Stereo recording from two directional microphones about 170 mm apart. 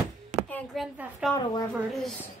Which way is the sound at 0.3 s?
45° right (ahead or behind).